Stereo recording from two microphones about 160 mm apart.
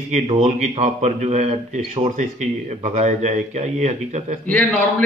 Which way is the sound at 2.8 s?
45° right (ahead or behind).